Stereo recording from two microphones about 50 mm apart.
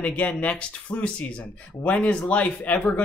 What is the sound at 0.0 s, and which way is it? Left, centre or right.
Speech, left.